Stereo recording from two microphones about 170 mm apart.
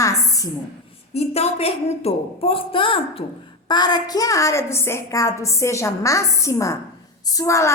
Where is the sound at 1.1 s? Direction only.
40° left (ahead or behind).